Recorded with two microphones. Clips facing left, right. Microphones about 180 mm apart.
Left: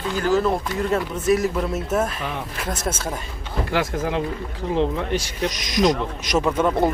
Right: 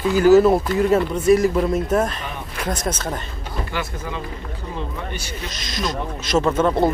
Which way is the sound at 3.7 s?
85° left.